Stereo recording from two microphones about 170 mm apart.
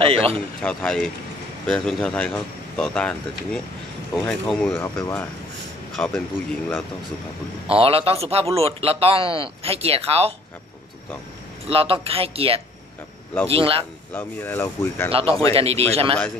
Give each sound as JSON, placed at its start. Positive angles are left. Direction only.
{"t": 0.0, "sound": "a man's voice", "side_deg": -35}
{"t": 0.6, "sound": "speech", "side_deg": 5}
{"t": 4.7, "sound": "speech", "side_deg": 15}
{"t": 5.9, "sound": "a man's voice", "side_deg": 5}
{"t": 7.7, "sound": "a man's voice", "side_deg": -35}
{"t": 11.6, "sound": "a man's voice", "side_deg": -35}
{"t": 14.1, "sound": "speech", "side_deg": 10}
{"t": 15.0, "sound": "a man's voice", "side_deg": -35}